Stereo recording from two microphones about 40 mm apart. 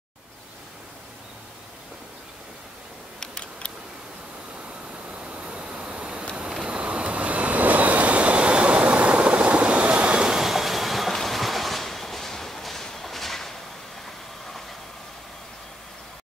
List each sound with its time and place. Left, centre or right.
3.2 s a sound: left
5.2 s vehicle: right
10.2 s train: centre